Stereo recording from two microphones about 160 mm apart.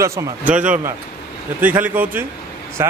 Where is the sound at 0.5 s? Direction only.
10° right (ahead or behind).